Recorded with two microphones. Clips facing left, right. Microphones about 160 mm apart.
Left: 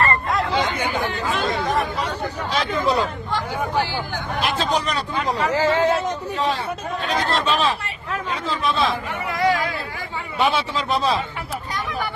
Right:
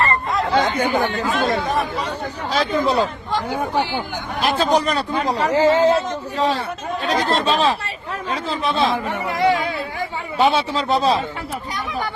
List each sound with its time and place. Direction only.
0.5 s speech: 45° right (ahead or behind)
2.5 s speech: 35° right (ahead or behind)
4.4 s speech: 40° right (ahead or behind)